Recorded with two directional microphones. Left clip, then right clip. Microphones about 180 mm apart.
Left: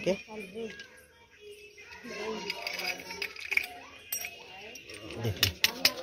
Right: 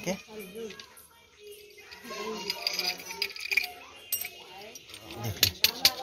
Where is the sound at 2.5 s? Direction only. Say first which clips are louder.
Right 7 dB; centre (ahead or behind).